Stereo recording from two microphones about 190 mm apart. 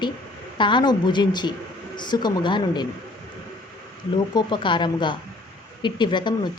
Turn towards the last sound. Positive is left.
turn(degrees=25)  # may be behind; listen again after turning